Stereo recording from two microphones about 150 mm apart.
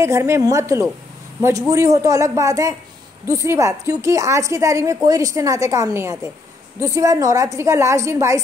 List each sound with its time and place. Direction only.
0.0 s a woman's voice: 20° right (ahead or behind)